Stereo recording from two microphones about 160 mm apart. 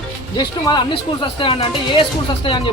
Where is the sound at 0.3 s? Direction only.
25° left (ahead or behind).